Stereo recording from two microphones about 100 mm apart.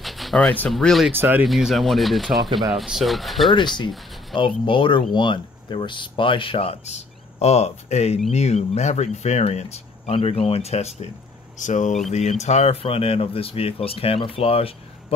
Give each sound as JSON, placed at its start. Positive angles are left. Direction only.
{"t": 0.0, "sound": "a sound", "side_deg": 0}
{"t": 0.7, "sound": "speech", "side_deg": 0}
{"t": 1.1, "sound": "speech", "side_deg": -20}
{"t": 1.4, "sound": "speech", "side_deg": -5}
{"t": 3.5, "sound": "speech", "side_deg": 50}
{"t": 12.2, "sound": "speech", "side_deg": 90}